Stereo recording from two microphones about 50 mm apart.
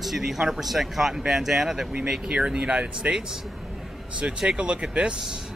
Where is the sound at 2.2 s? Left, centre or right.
Right.